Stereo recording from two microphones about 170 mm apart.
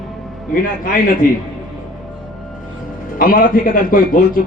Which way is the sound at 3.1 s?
55° left (ahead or behind).